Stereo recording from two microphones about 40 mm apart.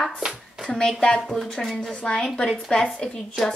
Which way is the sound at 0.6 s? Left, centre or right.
Left.